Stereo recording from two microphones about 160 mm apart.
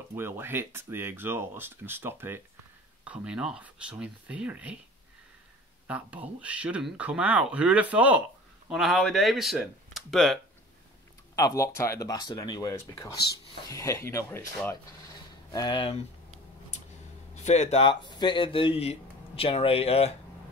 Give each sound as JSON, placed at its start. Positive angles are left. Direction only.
{"t": 0.1, "sound": "speech", "side_deg": -15}
{"t": 5.9, "sound": "speech", "side_deg": -10}
{"t": 11.3, "sound": "speech", "side_deg": 20}
{"t": 15.5, "sound": "speech", "side_deg": 30}
{"t": 17.5, "sound": "speech", "side_deg": 45}